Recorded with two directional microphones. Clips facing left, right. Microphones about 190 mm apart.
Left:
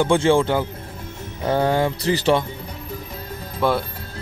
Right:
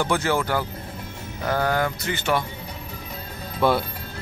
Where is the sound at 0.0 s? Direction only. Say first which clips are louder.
Left 6 dB; 25° left (ahead or behind).